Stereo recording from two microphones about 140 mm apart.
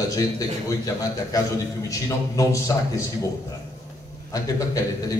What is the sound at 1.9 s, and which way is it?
A man's voice, 20° left (ahead or behind).